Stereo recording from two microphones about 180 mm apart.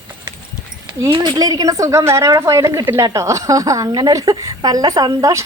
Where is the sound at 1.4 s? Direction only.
20° right (ahead or behind).